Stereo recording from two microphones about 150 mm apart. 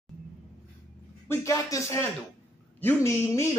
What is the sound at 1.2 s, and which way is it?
Speech, 15° left (ahead or behind).